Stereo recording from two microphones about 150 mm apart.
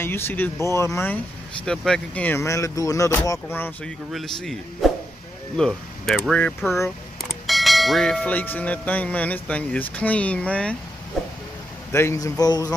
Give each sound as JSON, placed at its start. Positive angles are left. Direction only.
{"t": 0.0, "sound": "speech", "side_deg": 15}
{"t": 4.1, "sound": "speech", "side_deg": 0}
{"t": 11.2, "sound": "a sound", "side_deg": 0}
{"t": 11.9, "sound": "a man's voice", "side_deg": 20}